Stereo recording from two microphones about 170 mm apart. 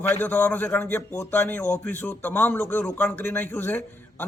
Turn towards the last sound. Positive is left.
turn(degrees=10)  # may be behind; listen again after turning